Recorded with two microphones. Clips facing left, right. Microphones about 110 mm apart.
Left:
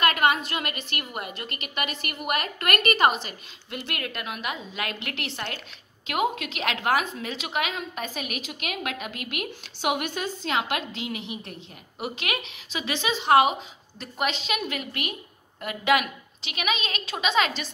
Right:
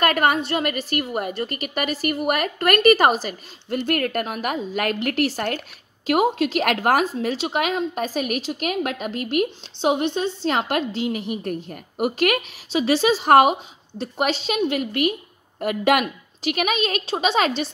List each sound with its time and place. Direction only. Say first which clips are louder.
0.0 s a woman's voice: right 3 dB; 40° right (ahead or behind)
6.6 s a woman's voice: right 4 dB; 45° right (ahead or behind); by 10.5 s 25° right (ahead or behind)
10.5 s a woman's voice: right 3 dB; 40° right (ahead or behind)
11.2 s a woman's voice: right 10 dB; 50° right (ahead or behind)
12.7 s a woman's voice: right 10 dB; 35° right (ahead or behind)